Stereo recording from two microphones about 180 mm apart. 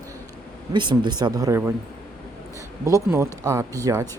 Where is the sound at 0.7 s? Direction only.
25° right (ahead or behind).